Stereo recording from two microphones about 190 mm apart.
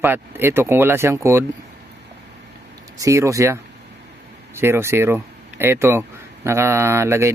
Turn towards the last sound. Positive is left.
turn(degrees=-15)  # may be behind; listen again after turning